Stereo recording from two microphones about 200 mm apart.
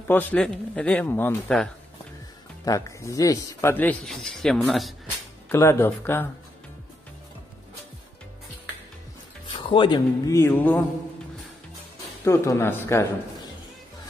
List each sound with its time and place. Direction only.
0.1 s speech: 10° left (ahead or behind)
5.5 s speech: 10° left (ahead or behind)
9.6 s speech: 25° left (ahead or behind); by 10.9 s 10° left (ahead or behind)
12.3 s speech: 15° left (ahead or behind)